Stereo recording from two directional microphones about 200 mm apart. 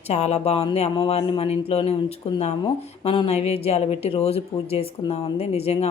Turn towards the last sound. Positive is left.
turn(degrees=30)  # may be behind; listen again after turning